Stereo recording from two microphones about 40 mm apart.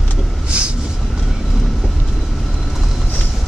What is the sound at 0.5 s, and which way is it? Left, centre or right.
Vehicle, right.